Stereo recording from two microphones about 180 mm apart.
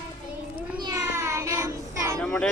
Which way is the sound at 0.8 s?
20° right (ahead or behind).